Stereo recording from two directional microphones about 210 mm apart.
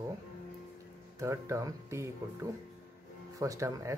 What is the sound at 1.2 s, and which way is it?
Speech, 15° right (ahead or behind).